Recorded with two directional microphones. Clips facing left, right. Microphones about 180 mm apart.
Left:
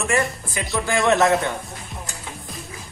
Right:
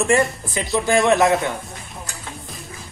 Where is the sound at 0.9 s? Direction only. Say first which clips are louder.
Right 2 dB; 20° right (ahead or behind).